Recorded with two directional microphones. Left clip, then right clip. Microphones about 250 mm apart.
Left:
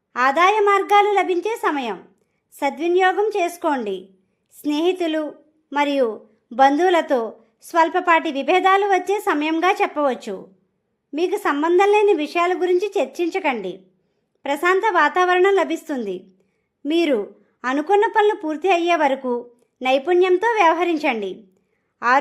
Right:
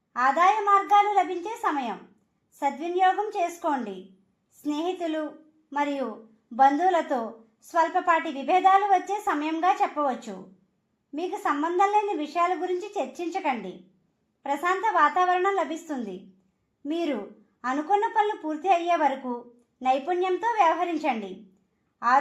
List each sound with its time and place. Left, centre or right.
0.1 s a woman's voice: left